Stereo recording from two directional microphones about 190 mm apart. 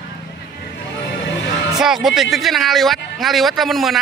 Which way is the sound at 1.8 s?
Centre (ahead or behind).